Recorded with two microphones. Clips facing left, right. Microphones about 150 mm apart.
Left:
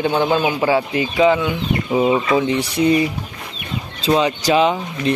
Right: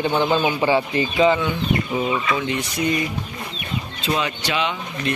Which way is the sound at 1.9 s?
30° left (ahead or behind).